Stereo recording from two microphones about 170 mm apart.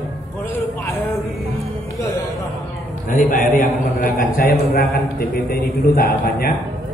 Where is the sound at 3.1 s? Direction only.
50° left (ahead or behind).